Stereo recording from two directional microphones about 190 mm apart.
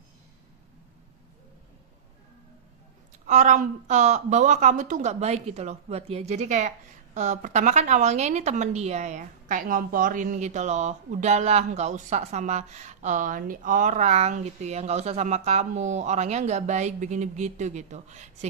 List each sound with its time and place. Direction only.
3.2 s speech: 40° right (ahead or behind)